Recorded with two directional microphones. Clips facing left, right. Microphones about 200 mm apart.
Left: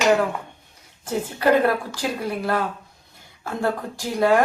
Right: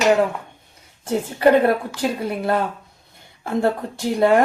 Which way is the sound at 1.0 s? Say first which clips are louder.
Right 4 dB; 25° right (ahead or behind).